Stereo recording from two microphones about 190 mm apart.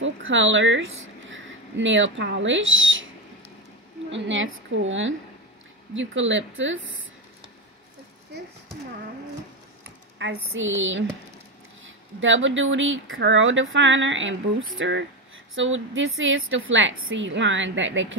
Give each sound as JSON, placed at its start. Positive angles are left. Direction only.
{"t": 0.0, "sound": "speech", "side_deg": -85}
{"t": 4.1, "sound": "speech", "side_deg": -75}
{"t": 10.1, "sound": "speech", "side_deg": -80}
{"t": 12.2, "sound": "speech", "side_deg": -85}